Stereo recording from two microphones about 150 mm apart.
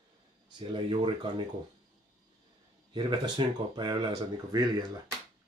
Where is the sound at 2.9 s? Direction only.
30° right (ahead or behind).